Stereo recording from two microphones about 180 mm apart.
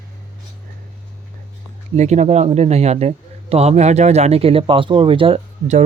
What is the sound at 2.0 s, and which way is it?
A man's voice, 40° right (ahead or behind).